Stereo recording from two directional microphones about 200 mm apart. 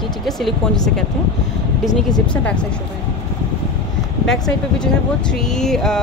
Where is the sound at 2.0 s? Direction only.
5° left (ahead or behind).